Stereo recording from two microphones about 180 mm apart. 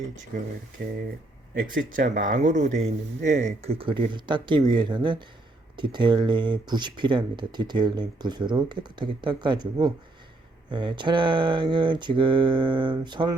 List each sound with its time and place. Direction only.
0.3 s speech: 45° right (ahead or behind)
2.0 s speech: 45° right (ahead or behind); by 13.3 s 25° right (ahead or behind)